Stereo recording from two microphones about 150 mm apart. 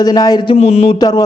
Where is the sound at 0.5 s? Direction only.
40° left (ahead or behind).